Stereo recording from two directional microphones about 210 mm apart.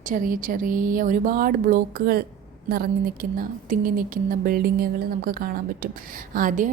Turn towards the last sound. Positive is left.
turn(degrees=-40)  # may be behind; listen again after turning